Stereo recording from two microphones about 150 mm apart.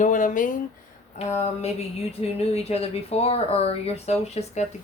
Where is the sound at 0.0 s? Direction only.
55° left (ahead or behind).